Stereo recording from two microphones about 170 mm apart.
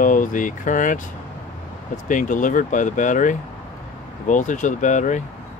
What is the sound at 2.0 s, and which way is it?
Speech, 50° left (ahead or behind).